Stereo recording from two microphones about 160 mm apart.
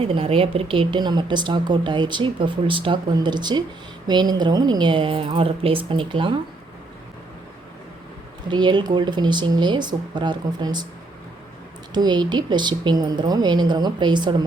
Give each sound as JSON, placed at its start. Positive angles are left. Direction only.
{"t": 0.0, "sound": "a woman's voice", "side_deg": -35}
{"t": 8.4, "sound": "speech", "side_deg": -30}
{"t": 11.9, "sound": "speech", "side_deg": -25}